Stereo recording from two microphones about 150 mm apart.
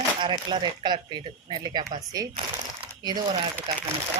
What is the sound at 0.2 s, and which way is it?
Speech, 30° right (ahead or behind).